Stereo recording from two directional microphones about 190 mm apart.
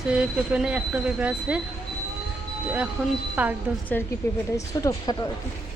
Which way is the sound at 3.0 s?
10° right (ahead or behind).